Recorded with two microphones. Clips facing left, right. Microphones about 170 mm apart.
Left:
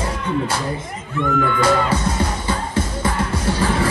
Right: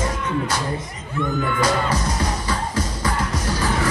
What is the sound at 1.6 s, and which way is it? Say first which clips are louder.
Music: left 3 dB; 25° left (ahead or behind).